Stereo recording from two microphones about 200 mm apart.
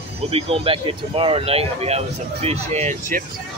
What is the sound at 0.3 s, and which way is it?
Speech, 30° right (ahead or behind).